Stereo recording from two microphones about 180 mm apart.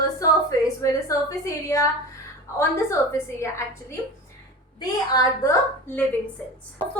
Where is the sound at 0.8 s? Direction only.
20° left (ahead or behind).